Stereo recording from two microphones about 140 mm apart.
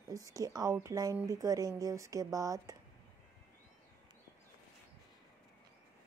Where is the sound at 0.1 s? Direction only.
25° right (ahead or behind).